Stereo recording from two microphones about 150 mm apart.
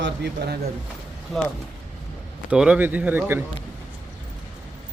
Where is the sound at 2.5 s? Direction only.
5° right (ahead or behind).